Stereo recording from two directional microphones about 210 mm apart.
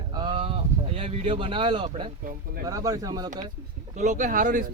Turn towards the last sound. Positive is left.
turn(degrees=-40)  # may be behind; listen again after turning